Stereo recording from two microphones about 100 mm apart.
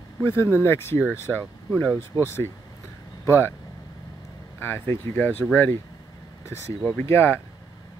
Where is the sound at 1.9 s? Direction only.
30° left (ahead or behind).